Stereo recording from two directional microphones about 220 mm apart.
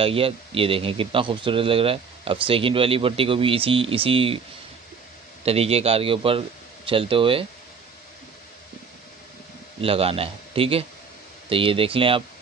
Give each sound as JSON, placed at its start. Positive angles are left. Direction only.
{"t": 0.0, "sound": "speech", "side_deg": -25}
{"t": 5.4, "sound": "speech", "side_deg": -25}
{"t": 9.8, "sound": "speech", "side_deg": -25}